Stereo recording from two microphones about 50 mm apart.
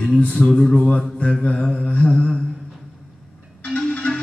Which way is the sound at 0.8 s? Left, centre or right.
Left.